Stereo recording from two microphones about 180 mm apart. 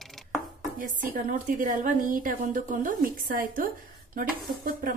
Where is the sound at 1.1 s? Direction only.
50° right (ahead or behind).